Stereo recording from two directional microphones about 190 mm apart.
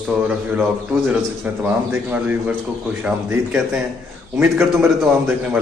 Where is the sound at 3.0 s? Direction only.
10° right (ahead or behind).